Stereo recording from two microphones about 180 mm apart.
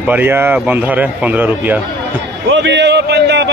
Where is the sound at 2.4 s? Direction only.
85° right.